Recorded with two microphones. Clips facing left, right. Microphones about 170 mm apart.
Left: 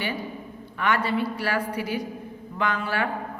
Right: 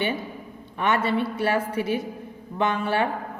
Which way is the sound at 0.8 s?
25° right (ahead or behind).